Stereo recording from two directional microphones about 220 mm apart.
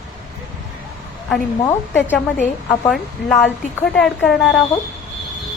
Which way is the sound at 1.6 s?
10° left (ahead or behind).